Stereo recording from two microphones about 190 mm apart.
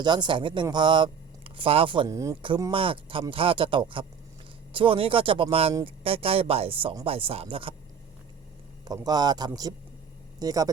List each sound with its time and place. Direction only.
0.0 s speech: 25° right (ahead or behind)
2.7 s speech: 25° right (ahead or behind)
8.8 s speech: 20° right (ahead or behind)